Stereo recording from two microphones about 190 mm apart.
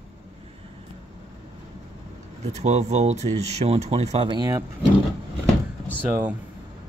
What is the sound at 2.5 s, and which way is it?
Speech, 35° right (ahead or behind).